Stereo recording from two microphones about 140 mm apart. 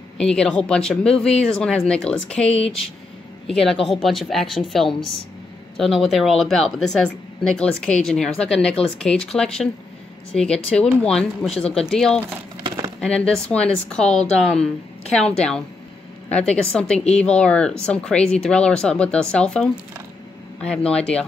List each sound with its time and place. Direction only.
0.2 s a woman's voice: 5° left (ahead or behind)
12.6 s a sound: 35° right (ahead or behind)
13.0 s speech: 5° left (ahead or behind)
20.7 s speech: 5° left (ahead or behind)